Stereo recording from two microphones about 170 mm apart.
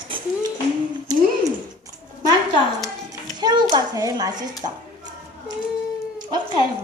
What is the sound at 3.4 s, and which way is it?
A child's voice, 25° right (ahead or behind).